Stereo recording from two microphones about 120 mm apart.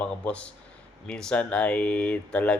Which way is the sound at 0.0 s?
10° left (ahead or behind).